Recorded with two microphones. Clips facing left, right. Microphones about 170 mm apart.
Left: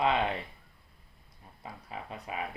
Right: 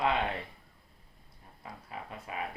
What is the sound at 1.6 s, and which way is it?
Speech, 20° left (ahead or behind).